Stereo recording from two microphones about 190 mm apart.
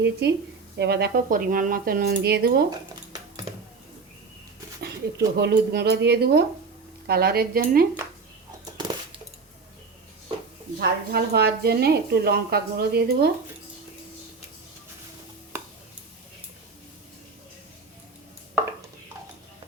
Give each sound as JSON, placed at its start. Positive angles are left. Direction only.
{"t": 0.0, "sound": "a woman's voice", "side_deg": -65}
{"t": 2.6, "sound": "a sound", "side_deg": -20}
{"t": 4.8, "sound": "a woman's voice", "side_deg": -60}
{"t": 10.8, "sound": "a woman's voice", "side_deg": -55}